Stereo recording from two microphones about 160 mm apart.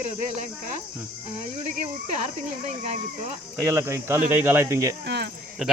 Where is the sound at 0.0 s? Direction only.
45° right (ahead or behind).